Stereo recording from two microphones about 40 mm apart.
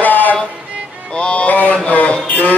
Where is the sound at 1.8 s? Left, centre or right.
Left.